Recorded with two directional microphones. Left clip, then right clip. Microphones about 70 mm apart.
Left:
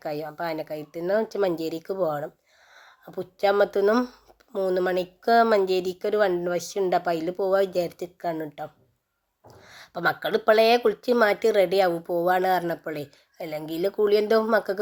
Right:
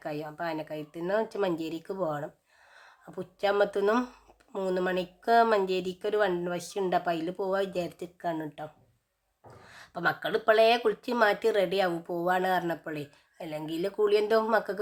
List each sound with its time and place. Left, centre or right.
0.0 s speech: left
3.9 s speech: left